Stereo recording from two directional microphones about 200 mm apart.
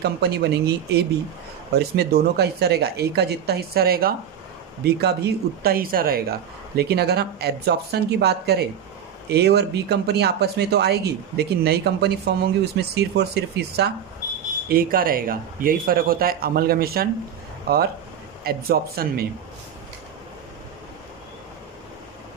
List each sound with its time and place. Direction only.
0.0 s speech: 55° right (ahead or behind)